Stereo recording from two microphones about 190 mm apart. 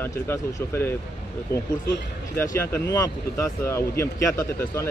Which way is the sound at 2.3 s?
15° left (ahead or behind).